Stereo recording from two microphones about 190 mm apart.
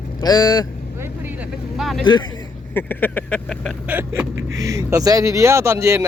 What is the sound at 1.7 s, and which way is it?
Vehicle, centre (ahead or behind).